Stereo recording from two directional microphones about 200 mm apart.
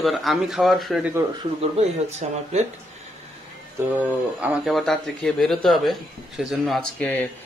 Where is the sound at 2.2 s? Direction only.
35° right (ahead or behind).